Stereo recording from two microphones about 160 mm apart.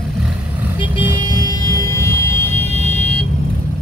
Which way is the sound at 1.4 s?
20° left (ahead or behind).